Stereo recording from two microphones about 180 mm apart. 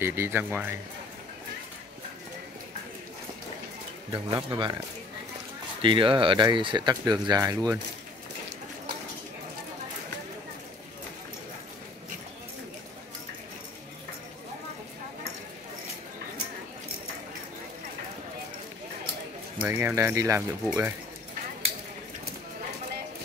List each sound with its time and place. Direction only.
0.0 s speech: 10° right (ahead or behind)
4.1 s speech: 25° right (ahead or behind)
5.8 s speech: 30° right (ahead or behind)
19.6 s speech: 10° right (ahead or behind)